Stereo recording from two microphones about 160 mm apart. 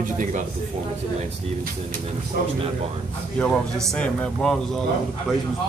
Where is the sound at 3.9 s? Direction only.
5° left (ahead or behind).